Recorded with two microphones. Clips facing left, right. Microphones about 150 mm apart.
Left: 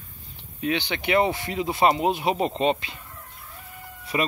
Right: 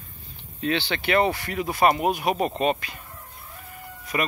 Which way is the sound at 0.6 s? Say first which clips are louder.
Right 1 dB; 15° left (ahead or behind).